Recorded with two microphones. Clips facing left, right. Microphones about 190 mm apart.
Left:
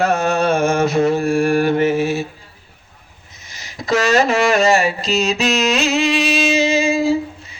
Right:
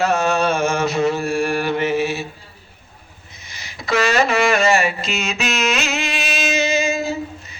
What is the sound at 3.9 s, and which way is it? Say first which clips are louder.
Mantra: left 2 dB; 40° left (ahead or behind).